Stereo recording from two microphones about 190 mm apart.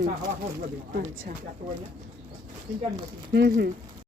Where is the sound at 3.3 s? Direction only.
60° right (ahead or behind).